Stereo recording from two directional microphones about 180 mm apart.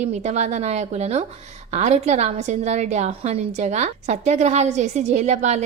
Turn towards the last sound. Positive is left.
turn(degrees=-40)  # may be behind; listen again after turning